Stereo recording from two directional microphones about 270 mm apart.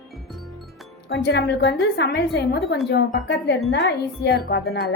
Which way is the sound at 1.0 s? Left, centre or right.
Left.